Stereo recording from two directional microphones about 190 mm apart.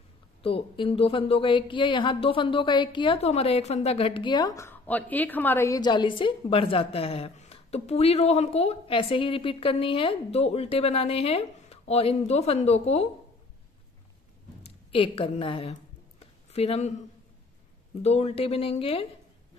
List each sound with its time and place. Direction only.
0.4 s speech: 30° left (ahead or behind)
14.6 s a sound: 30° left (ahead or behind)
18.0 s speech: 35° left (ahead or behind)